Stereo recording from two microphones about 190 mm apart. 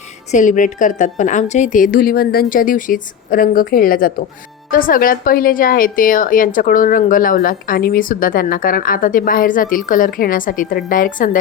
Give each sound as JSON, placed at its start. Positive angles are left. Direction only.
{"t": 0.3, "sound": "a woman's voice", "side_deg": 40}